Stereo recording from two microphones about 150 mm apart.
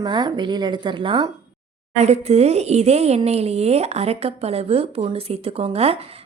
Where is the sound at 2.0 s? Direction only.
45° right (ahead or behind).